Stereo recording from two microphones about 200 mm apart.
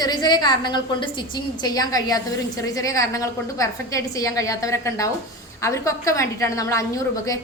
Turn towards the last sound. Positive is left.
turn(degrees=15)  # may be behind; listen again after turning